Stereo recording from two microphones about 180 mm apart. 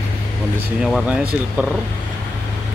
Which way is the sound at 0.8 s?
Centre (ahead or behind).